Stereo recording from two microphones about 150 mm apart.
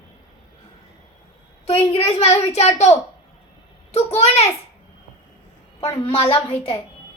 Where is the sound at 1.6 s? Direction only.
40° left (ahead or behind).